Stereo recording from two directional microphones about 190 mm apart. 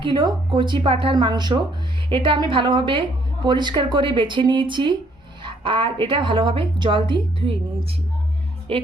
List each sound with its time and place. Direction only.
0.0 s a woman's voice: 25° right (ahead or behind)